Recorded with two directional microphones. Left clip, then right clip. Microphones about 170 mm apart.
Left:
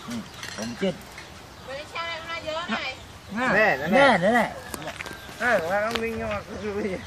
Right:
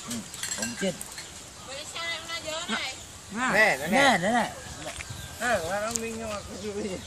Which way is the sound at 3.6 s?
20° left (ahead or behind).